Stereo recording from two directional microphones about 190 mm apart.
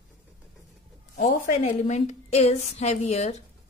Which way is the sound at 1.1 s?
45° left (ahead or behind).